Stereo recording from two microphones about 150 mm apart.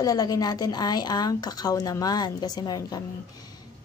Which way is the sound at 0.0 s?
25° left (ahead or behind).